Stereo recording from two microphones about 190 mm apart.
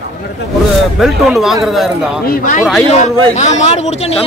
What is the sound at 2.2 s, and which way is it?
Speech, 45° left (ahead or behind).